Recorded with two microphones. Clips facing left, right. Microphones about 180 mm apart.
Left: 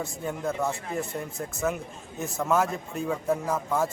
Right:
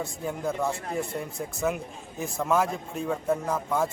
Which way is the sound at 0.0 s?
Centre (ahead or behind).